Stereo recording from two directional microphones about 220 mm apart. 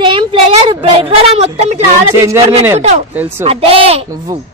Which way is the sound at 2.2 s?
15° right (ahead or behind).